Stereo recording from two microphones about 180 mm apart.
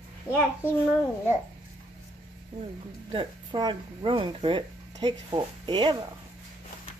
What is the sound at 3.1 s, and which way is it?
Speech, 25° right (ahead or behind).